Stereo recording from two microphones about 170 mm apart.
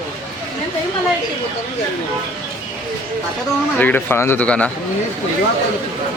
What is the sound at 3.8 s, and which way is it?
Speech, 10° left (ahead or behind).